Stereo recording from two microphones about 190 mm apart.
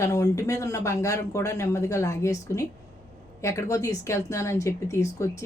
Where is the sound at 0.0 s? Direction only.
15° left (ahead or behind).